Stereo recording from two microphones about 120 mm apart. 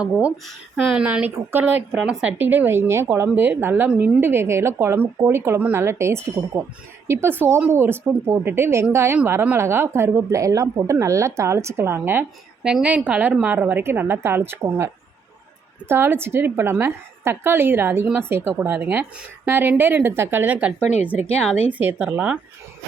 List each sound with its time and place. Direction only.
0.0 s a woman's voice: 10° right (ahead or behind)
15.9 s a woman's voice: 20° right (ahead or behind)